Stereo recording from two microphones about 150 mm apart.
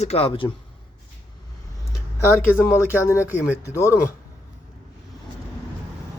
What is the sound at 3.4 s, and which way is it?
Speech, 20° left (ahead or behind).